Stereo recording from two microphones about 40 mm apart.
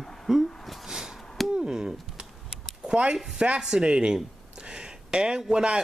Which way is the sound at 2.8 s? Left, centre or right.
Right.